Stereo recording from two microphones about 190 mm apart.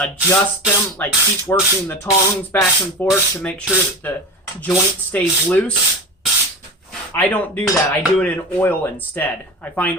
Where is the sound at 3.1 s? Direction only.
5° left (ahead or behind).